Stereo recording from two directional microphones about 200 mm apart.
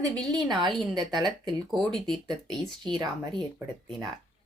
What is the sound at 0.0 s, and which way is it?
A woman's voice, 20° right (ahead or behind).